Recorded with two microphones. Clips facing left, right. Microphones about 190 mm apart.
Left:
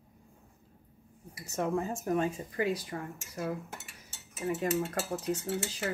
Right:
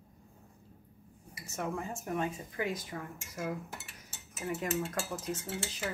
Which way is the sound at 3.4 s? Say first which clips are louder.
Left 2 dB; 35° left (ahead or behind).